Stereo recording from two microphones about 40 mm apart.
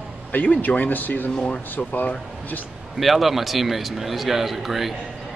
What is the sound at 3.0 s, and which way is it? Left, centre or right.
A man's voice, centre.